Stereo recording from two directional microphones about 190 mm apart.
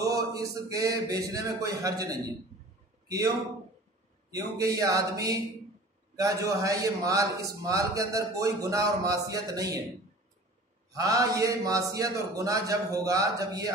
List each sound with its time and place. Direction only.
0.0 s a man's voice: 20° right (ahead or behind)
4.6 s a man's voice: 15° right (ahead or behind)
10.9 s a man's voice: 20° right (ahead or behind)